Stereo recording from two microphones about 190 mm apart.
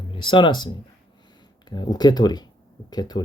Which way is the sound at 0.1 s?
25° left (ahead or behind).